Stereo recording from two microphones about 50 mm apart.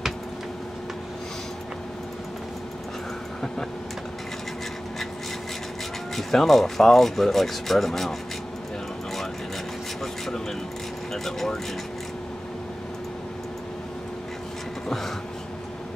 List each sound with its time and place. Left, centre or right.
6.1 s speech: centre
11.2 s speech: centre